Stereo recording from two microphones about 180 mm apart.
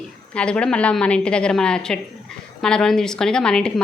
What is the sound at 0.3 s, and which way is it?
A woman's voice, 5° left (ahead or behind).